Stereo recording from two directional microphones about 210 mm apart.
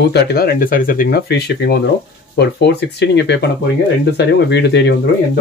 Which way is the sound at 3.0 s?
55° left (ahead or behind).